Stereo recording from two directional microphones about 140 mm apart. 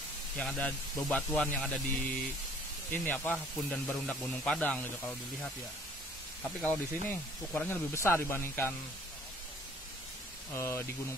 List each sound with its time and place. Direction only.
0.4 s speech: 10° left (ahead or behind)
6.6 s speech: 10° left (ahead or behind)
10.5 s speech: 20° left (ahead or behind)